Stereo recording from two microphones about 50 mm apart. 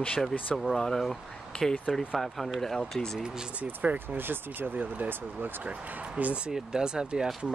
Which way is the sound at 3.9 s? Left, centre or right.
Right.